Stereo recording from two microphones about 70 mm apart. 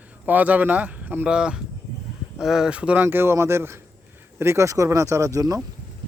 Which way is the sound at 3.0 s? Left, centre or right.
Right.